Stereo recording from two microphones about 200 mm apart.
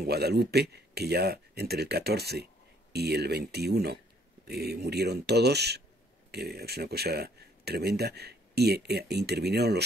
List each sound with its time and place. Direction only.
0.0 s speech: 55° right (ahead or behind)